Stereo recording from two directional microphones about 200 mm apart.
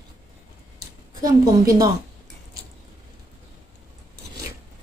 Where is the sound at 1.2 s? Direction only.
15° right (ahead or behind).